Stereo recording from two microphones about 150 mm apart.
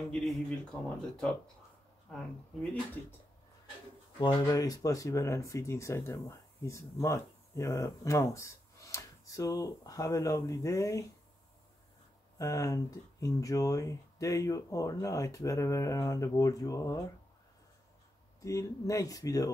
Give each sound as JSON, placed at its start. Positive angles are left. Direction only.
{"t": 0.1, "sound": "speech", "side_deg": 5}
{"t": 4.2, "sound": "speech", "side_deg": 25}
{"t": 12.4, "sound": "speech", "side_deg": 20}
{"t": 18.4, "sound": "speech", "side_deg": 20}